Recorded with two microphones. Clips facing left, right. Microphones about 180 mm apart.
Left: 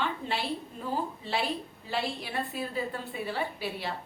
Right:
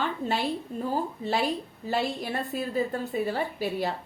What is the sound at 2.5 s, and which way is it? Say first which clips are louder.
A woman's voice: right 5 dB; 45° right (ahead or behind).